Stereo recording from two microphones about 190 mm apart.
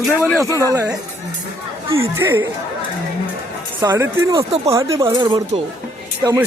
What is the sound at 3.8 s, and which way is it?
Speech, 15° right (ahead or behind).